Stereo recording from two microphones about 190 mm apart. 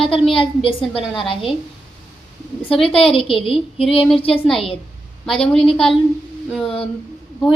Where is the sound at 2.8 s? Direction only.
30° left (ahead or behind).